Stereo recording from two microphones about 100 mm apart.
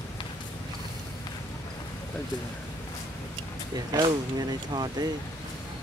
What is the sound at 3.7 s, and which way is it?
Speech, 40° right (ahead or behind).